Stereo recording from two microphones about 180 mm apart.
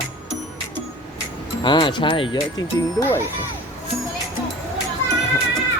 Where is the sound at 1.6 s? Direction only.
25° left (ahead or behind).